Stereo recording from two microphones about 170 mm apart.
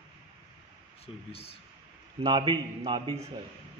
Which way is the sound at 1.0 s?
35° left (ahead or behind).